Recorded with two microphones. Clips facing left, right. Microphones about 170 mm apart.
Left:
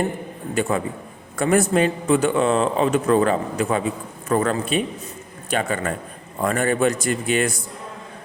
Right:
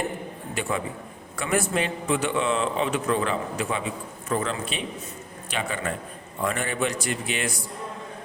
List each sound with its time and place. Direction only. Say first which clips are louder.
0.5 s a man's voice: left 6 dB; 45° left (ahead or behind)